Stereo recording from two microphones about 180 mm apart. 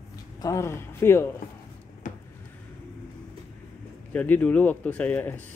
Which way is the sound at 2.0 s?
45° left (ahead or behind).